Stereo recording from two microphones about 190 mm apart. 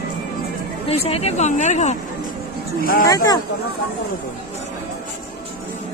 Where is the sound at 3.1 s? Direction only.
20° left (ahead or behind).